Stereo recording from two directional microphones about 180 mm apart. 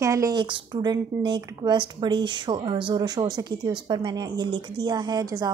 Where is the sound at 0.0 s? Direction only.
15° right (ahead or behind).